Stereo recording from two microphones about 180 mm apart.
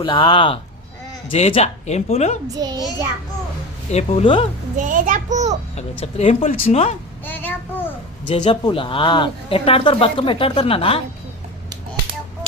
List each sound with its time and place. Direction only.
0.0 s speech: 25° left (ahead or behind)
2.6 s a child's voice: 20° right (ahead or behind)
3.9 s speech: 35° left (ahead or behind)
4.8 s a child's voice: 45° right (ahead or behind)
5.7 s speech: 35° left (ahead or behind)
6.5 s speech: 50° left (ahead or behind)
7.3 s child singing: 10° left (ahead or behind)
8.3 s speech: 25° left (ahead or behind)